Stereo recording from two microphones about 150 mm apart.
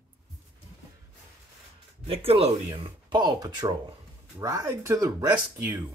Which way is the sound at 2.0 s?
40° right (ahead or behind).